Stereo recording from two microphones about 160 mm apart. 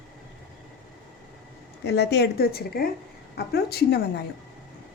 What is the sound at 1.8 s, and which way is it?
A woman's voice, 90° left.